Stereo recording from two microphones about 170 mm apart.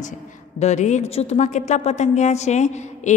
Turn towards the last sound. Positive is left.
turn(degrees=45)  # may be behind; listen again after turning